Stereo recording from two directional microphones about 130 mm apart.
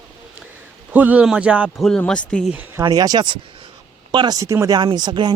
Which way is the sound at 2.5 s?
10° right (ahead or behind).